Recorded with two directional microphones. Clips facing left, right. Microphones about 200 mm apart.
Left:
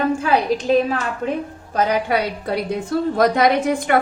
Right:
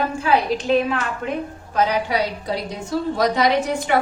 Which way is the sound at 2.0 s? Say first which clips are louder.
Left 2 dB; 55° left (ahead or behind).